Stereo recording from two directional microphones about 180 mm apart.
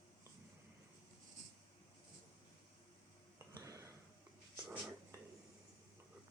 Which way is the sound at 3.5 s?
20° right (ahead or behind).